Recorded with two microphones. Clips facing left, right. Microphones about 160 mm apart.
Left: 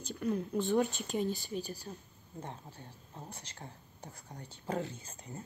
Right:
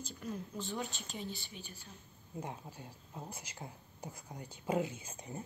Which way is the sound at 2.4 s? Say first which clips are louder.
Even; 10° right (ahead or behind).